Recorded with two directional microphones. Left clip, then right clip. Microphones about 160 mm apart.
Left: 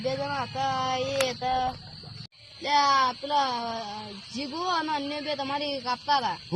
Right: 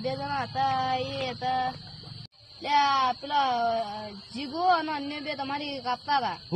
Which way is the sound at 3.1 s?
15° right (ahead or behind).